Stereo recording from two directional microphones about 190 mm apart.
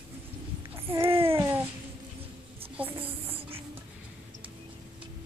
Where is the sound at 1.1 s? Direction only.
30° right (ahead or behind).